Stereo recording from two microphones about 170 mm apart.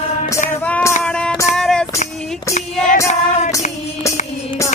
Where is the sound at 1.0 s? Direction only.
5° left (ahead or behind).